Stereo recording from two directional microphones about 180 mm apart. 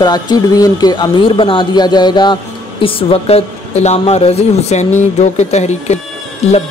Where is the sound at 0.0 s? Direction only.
20° left (ahead or behind).